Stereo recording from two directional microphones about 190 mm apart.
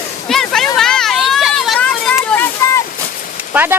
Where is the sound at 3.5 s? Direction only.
10° right (ahead or behind).